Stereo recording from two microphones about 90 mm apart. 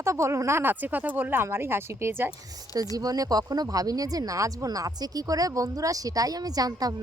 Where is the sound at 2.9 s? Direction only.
40° right (ahead or behind).